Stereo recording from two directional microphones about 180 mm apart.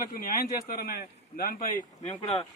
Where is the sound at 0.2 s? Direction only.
55° left (ahead or behind).